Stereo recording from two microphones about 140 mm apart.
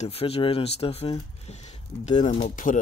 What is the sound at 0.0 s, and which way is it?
Speech, 45° left (ahead or behind).